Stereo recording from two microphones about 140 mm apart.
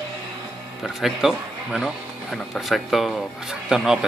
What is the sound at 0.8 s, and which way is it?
Speech, centre (ahead or behind).